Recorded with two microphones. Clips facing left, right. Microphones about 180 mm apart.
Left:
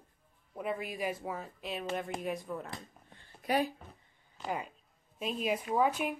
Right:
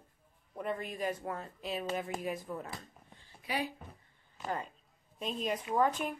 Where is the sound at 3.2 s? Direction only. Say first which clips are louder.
Left 6 dB; 50° left (ahead or behind).